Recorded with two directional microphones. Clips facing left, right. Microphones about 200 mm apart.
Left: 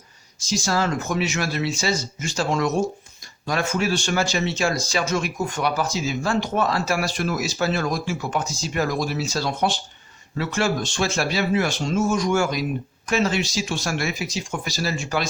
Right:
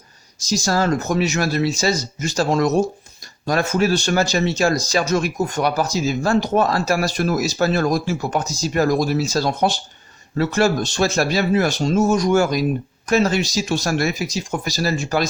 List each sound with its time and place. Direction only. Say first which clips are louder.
0.3 s speech: right 3 dB; 40° right (ahead or behind)